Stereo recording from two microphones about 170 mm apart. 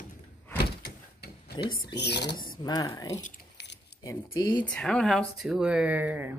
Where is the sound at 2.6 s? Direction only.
25° left (ahead or behind).